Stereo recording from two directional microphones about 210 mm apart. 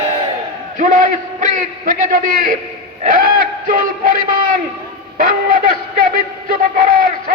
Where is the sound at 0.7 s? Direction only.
40° right (ahead or behind).